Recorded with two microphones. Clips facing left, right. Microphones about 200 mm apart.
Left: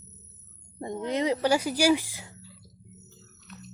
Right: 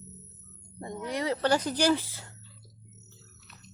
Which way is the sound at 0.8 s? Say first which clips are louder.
Left 4 dB; 20° left (ahead or behind).